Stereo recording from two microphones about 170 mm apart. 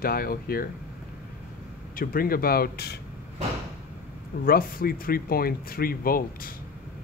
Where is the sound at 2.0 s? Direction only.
60° left (ahead or behind).